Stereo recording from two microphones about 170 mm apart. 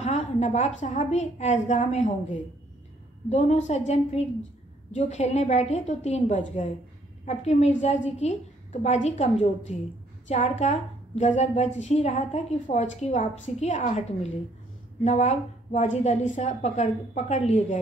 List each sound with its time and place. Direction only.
0.0 s a woman's voice: 40° left (ahead or behind)
3.3 s a woman's voice: 40° left (ahead or behind)
15.0 s a woman's voice: 40° left (ahead or behind)